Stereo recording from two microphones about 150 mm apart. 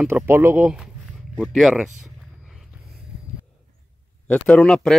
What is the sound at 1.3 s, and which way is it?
Speech, centre (ahead or behind).